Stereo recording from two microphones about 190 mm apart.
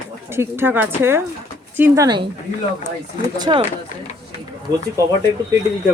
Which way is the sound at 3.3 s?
20° right (ahead or behind).